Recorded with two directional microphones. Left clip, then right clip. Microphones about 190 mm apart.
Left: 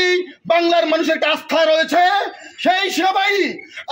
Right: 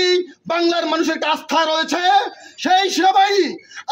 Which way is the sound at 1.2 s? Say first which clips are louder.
Left 2 dB; 30° right (ahead or behind).